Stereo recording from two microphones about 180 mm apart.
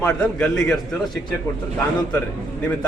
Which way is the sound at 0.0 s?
5° left (ahead or behind).